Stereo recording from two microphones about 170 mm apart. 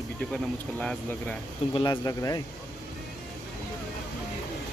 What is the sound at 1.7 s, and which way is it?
Speech, 25° left (ahead or behind).